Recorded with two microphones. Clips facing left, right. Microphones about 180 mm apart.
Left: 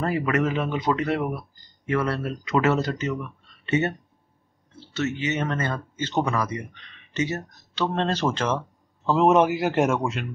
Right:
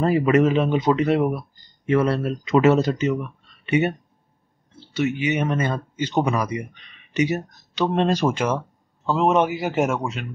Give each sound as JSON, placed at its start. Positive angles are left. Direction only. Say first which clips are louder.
{"t": 0.0, "sound": "speech", "louder": "right 6 dB", "side_deg": -20}
{"t": 4.9, "sound": "speech", "louder": "right 4 dB", "side_deg": -15}
{"t": 9.0, "sound": "a man's voice", "louder": "left 1 dB", "side_deg": 0}